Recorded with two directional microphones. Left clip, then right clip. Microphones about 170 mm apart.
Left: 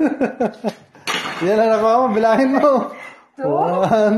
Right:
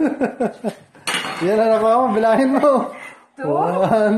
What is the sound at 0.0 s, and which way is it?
Speech, 5° left (ahead or behind).